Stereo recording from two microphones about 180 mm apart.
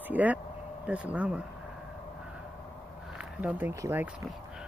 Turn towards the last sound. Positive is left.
turn(degrees=-15)  # may be behind; listen again after turning